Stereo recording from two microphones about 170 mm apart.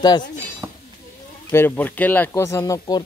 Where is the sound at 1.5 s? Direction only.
10° left (ahead or behind).